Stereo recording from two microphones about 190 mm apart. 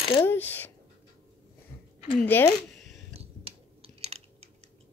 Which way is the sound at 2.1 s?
10° left (ahead or behind).